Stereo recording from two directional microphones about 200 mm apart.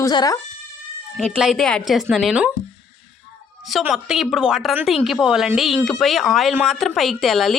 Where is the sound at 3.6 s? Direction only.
Centre (ahead or behind).